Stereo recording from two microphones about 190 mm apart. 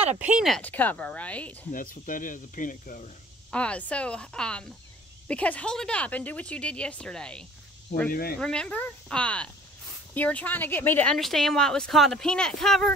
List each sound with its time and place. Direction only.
0.2 s speech: 5° right (ahead or behind)
1.7 s speech: 45° left (ahead or behind)
3.5 s a woman's voice: 5° left (ahead or behind)
8.1 s speech: 55° left (ahead or behind)
8.4 s a woman's voice: 5° left (ahead or behind)